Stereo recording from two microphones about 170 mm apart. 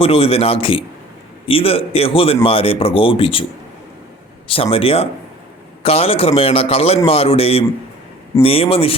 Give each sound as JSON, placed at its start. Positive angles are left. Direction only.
{"t": 0.0, "sound": "speech", "side_deg": 35}
{"t": 4.4, "sound": "speech", "side_deg": 35}